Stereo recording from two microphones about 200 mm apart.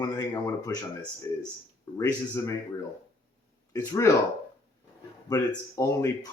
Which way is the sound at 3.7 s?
15° left (ahead or behind).